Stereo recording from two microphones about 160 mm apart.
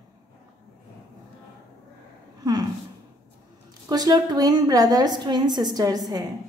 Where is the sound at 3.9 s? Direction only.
25° right (ahead or behind).